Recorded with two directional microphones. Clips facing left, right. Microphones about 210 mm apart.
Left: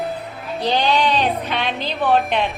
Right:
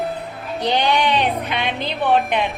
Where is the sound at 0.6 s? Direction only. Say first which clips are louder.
Even; 15° right (ahead or behind).